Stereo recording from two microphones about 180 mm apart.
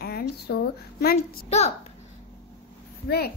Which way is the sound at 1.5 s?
35° left (ahead or behind).